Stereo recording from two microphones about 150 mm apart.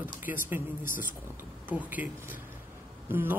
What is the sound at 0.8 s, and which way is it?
Speech, 65° left (ahead or behind).